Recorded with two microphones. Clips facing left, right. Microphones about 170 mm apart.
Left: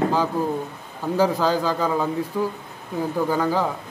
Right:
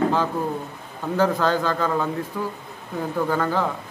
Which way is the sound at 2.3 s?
20° left (ahead or behind).